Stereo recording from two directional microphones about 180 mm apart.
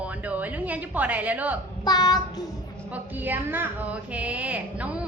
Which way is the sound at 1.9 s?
20° left (ahead or behind).